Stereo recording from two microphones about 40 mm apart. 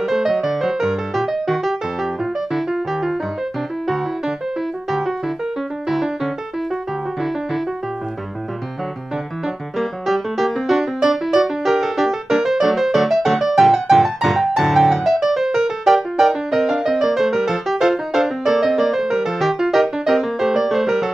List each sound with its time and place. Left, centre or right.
0.0 s music: centre
5.9 s music: centre
9.8 s music: centre